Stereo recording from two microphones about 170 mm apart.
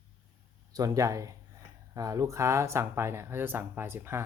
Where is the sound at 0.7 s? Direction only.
20° right (ahead or behind).